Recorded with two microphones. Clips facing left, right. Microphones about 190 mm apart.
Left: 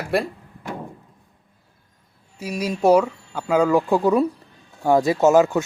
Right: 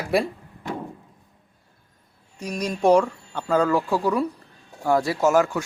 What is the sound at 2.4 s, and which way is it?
Speech, 5° left (ahead or behind).